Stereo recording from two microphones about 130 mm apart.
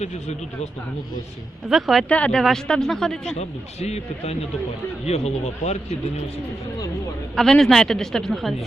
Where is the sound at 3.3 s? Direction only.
55° left (ahead or behind).